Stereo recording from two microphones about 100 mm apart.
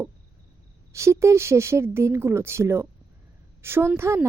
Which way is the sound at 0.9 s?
30° right (ahead or behind).